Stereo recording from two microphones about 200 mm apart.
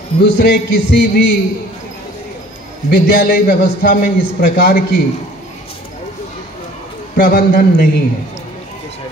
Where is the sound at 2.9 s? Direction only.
50° left (ahead or behind).